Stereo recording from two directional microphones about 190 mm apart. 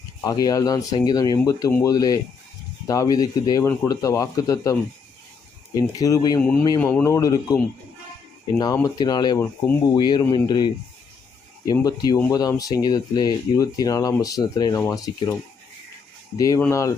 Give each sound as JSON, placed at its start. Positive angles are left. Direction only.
{"t": 0.3, "sound": "speech", "side_deg": 20}
{"t": 6.4, "sound": "speech", "side_deg": 5}
{"t": 16.4, "sound": "speech", "side_deg": 15}